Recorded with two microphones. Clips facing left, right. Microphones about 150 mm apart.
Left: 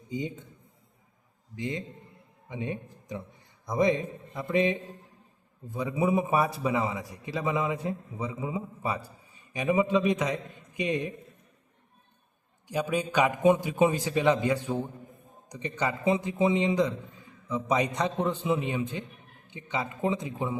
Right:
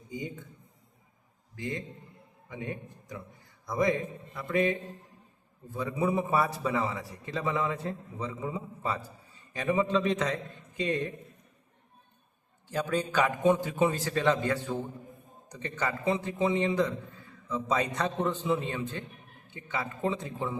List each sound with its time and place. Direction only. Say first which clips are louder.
0.1 s a man's voice: left 4 dB; 20° left (ahead or behind)
1.5 s a man's voice: left 2 dB; 20° left (ahead or behind)
12.6 s a man's voice: left 1 dB; 10° left (ahead or behind)